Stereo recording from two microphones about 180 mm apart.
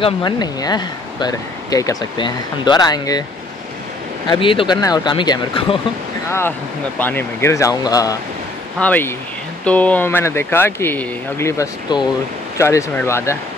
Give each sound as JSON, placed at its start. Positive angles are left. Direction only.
{"t": 0.0, "sound": "speech", "side_deg": 25}
{"t": 4.3, "sound": "speech", "side_deg": 30}
{"t": 7.0, "sound": "speech", "side_deg": 10}
{"t": 8.7, "sound": "speech", "side_deg": 10}